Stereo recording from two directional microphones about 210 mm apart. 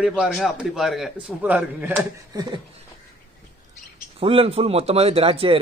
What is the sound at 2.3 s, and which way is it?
Speech, 20° right (ahead or behind).